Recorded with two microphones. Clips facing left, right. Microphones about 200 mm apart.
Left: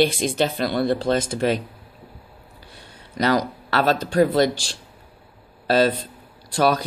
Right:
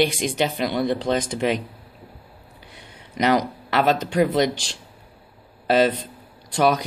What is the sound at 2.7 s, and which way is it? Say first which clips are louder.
A man's voice: even; 20° right (ahead or behind).